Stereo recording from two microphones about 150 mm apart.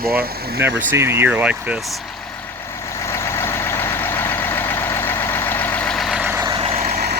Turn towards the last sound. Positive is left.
turn(degrees=-45)  # may be behind; listen again after turning